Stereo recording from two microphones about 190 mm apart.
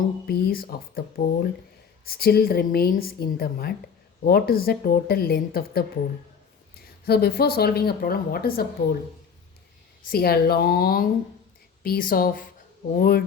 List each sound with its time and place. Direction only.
0.3 s a woman's voice: 60° left (ahead or behind)
7.0 s speech: 55° left (ahead or behind)
10.1 s a woman's voice: 55° left (ahead or behind)